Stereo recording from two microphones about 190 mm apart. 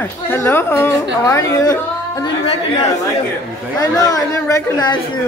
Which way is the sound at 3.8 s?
20° left (ahead or behind).